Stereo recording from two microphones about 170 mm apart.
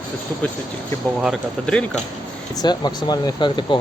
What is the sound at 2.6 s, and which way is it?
Speech, 25° left (ahead or behind).